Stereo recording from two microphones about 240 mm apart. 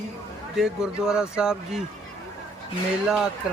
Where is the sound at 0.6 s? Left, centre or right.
Centre.